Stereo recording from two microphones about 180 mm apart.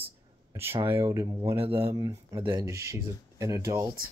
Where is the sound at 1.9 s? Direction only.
20° right (ahead or behind).